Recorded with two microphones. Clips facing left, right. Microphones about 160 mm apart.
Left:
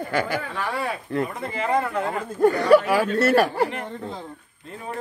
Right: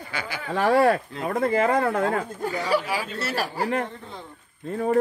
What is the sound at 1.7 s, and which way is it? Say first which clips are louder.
Speech: right 1 dB; 85° right.